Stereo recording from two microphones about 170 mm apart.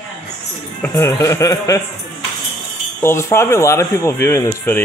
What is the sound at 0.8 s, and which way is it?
Speech, 15° left (ahead or behind).